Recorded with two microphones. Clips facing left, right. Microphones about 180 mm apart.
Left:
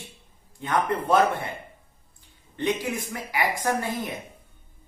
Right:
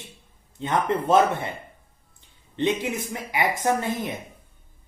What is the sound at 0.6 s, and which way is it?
Speech, 25° right (ahead or behind).